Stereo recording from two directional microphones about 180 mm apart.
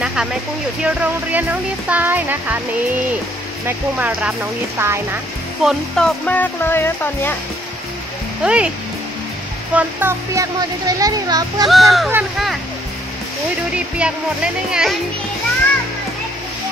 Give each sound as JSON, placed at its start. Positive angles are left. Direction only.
{"t": 0.0, "sound": "a sound", "side_deg": -5}
{"t": 0.8, "sound": "speech", "side_deg": -10}
{"t": 3.6, "sound": "speech", "side_deg": -5}
{"t": 5.6, "sound": "speech", "side_deg": 0}
{"t": 8.5, "sound": "speech", "side_deg": -5}
{"t": 9.8, "sound": "a child's voice", "side_deg": -10}
{"t": 11.6, "sound": "speech", "side_deg": 0}
{"t": 13.7, "sound": "speech", "side_deg": -5}